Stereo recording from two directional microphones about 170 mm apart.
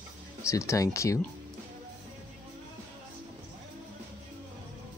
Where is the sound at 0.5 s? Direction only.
15° left (ahead or behind).